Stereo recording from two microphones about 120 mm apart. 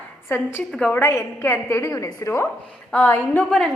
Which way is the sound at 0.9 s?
20° left (ahead or behind).